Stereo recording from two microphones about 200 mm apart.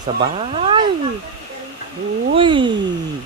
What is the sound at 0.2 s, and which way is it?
Speech, 30° right (ahead or behind).